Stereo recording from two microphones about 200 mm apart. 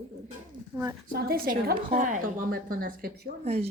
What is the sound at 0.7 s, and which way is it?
Speech, 15° right (ahead or behind).